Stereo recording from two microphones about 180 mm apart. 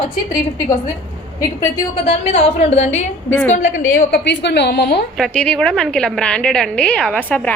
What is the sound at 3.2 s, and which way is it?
Speech, 10° left (ahead or behind).